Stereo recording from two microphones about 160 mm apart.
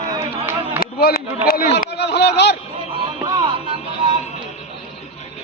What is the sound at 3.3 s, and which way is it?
Music, 20° right (ahead or behind).